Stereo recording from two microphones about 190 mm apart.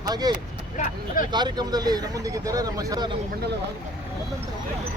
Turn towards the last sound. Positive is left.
turn(degrees=-20)  # may be behind; listen again after turning